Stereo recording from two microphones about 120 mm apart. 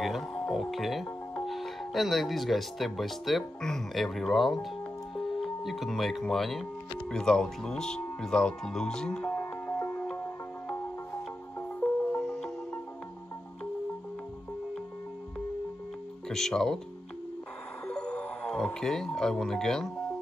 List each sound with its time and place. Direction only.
0.0 s speech: centre (ahead or behind)
9.7 s music: 20° left (ahead or behind)
12.2 s music: 5° left (ahead or behind)
16.3 s speech: 5° left (ahead or behind)
17.9 s speech: 10° left (ahead or behind)